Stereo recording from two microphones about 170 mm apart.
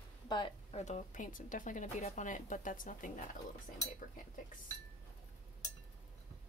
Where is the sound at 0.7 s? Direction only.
40° left (ahead or behind).